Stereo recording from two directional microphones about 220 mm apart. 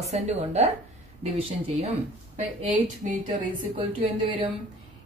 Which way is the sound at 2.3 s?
35° right (ahead or behind).